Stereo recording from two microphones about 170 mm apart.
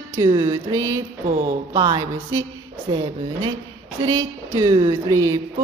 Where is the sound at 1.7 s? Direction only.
30° right (ahead or behind).